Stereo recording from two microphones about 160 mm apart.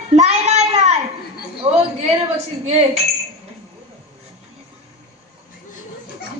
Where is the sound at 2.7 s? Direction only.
45° right (ahead or behind).